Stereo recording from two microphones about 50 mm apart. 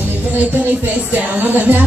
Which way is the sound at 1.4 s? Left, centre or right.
Right.